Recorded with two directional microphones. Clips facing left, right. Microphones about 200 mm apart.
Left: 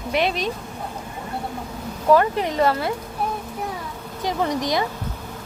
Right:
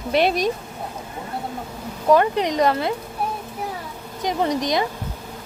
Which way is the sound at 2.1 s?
15° right (ahead or behind).